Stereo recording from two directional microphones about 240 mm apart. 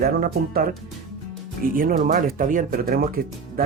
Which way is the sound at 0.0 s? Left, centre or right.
Right.